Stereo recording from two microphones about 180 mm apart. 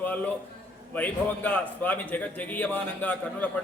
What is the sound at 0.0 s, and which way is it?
A man's voice, 10° left (ahead or behind).